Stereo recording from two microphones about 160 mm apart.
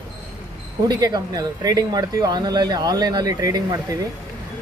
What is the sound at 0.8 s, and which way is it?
Speech, 25° right (ahead or behind).